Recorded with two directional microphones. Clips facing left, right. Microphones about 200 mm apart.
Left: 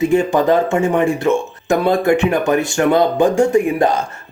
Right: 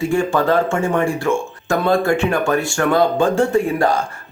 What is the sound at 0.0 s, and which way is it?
Speech, 20° left (ahead or behind).